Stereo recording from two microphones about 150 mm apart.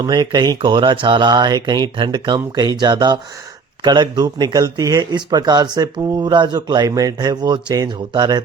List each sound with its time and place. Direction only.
0.0 s speech: 30° right (ahead or behind)